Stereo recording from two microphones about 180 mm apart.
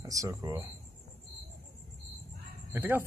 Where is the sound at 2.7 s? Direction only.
10° right (ahead or behind).